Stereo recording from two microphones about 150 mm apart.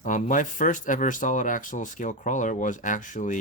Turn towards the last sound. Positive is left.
turn(degrees=60)  # may be behind; listen again after turning